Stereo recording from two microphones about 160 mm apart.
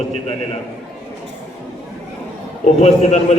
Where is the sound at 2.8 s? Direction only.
45° left (ahead or behind).